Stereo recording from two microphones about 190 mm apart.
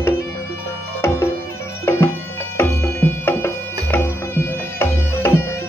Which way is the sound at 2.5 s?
15° left (ahead or behind).